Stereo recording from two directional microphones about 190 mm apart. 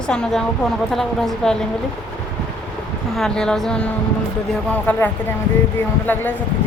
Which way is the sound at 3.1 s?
5° left (ahead or behind).